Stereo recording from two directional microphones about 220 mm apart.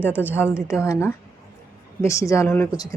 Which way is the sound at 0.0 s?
10° left (ahead or behind).